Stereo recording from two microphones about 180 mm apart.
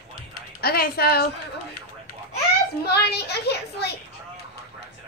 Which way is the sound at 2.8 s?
65° left (ahead or behind).